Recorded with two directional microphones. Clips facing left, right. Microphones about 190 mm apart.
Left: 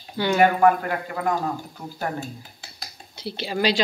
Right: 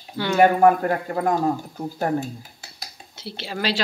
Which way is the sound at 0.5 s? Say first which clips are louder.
Right 2 dB; 40° right (ahead or behind).